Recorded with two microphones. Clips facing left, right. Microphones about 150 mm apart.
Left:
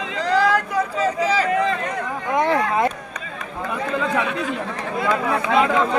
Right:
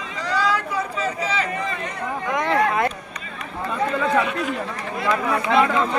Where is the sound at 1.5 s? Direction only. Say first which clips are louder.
Left 7 dB; 80° left.